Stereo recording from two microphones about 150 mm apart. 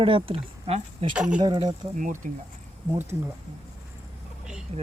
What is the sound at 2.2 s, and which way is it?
Speech, 60° right (ahead or behind).